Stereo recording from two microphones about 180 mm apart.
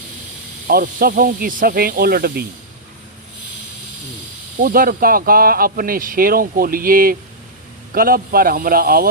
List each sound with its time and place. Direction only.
0.7 s speech: 55° right (ahead or behind)
4.6 s speech: 50° right (ahead or behind)